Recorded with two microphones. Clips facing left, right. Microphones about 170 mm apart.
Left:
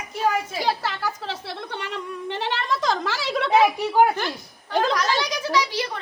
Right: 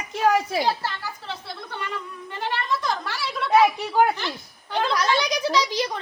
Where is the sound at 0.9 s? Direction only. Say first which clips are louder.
Left 4 dB; 90° left.